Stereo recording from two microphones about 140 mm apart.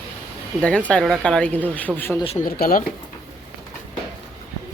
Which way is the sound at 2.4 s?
85° left.